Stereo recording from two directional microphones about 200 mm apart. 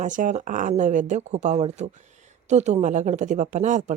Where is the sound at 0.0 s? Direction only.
40° right (ahead or behind).